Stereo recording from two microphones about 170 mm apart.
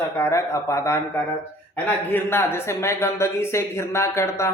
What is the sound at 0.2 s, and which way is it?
Speech, 15° left (ahead or behind).